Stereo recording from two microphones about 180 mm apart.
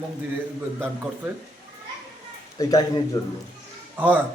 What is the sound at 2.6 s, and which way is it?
Speech, 20° left (ahead or behind).